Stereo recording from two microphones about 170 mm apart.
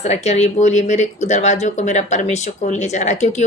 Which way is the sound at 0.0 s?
40° left (ahead or behind).